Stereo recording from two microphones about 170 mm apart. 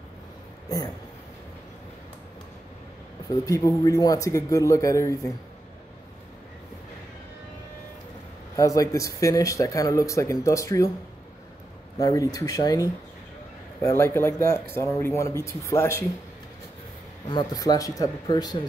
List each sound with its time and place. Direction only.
0.7 s a sound: 20° left (ahead or behind)
3.3 s speech: 20° left (ahead or behind)
8.5 s speech: 20° left (ahead or behind)
12.0 s speech: 20° left (ahead or behind)
17.3 s speech: 25° left (ahead or behind)